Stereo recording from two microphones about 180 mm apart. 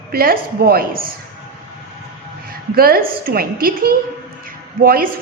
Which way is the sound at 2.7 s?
55° right (ahead or behind).